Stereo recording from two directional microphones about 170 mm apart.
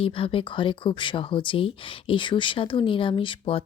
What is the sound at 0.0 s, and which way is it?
Speech, 30° left (ahead or behind).